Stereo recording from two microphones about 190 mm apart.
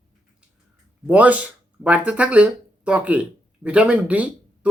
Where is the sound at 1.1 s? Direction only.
10° right (ahead or behind).